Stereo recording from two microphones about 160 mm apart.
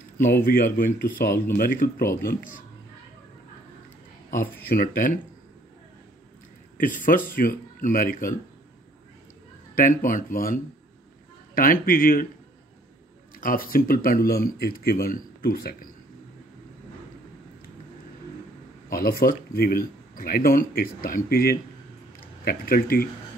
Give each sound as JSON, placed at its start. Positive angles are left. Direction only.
{"t": 0.2, "sound": "speech", "side_deg": 60}
{"t": 4.3, "sound": "speech", "side_deg": 55}
{"t": 6.8, "sound": "speech", "side_deg": 55}
{"t": 9.8, "sound": "speech", "side_deg": 55}
{"t": 13.4, "sound": "speech", "side_deg": 65}
{"t": 18.9, "sound": "speech", "side_deg": 70}